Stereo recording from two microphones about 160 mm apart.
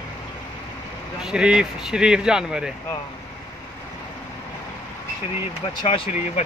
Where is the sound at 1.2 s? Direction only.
5° right (ahead or behind).